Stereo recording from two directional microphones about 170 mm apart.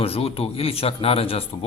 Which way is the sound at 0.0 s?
35° left (ahead or behind).